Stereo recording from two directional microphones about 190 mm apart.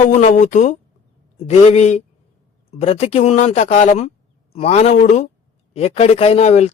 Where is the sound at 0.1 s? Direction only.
40° left (ahead or behind).